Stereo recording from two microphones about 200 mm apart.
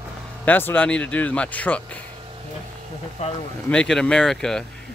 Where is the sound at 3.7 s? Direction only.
5° left (ahead or behind).